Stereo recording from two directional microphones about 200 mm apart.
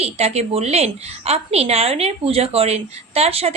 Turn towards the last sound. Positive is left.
turn(degrees=-30)  # may be behind; listen again after turning